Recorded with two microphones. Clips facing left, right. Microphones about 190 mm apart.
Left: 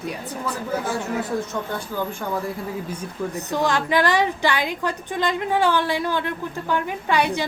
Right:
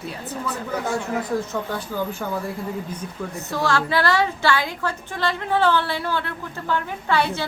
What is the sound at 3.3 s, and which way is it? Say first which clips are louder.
A woman's voice: even; 20° left (ahead or behind).